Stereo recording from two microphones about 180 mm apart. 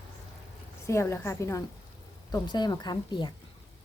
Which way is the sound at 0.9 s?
15° left (ahead or behind).